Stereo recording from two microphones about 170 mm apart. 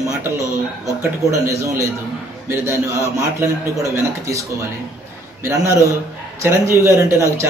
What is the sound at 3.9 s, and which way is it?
Speech, 20° right (ahead or behind).